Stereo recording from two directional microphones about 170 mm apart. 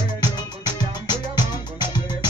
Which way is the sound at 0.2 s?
25° left (ahead or behind).